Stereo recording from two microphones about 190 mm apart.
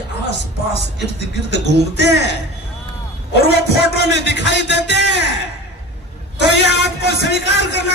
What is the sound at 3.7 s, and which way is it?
Music, 60° left (ahead or behind).